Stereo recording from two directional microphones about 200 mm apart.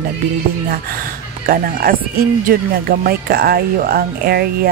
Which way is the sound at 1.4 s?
45° right (ahead or behind).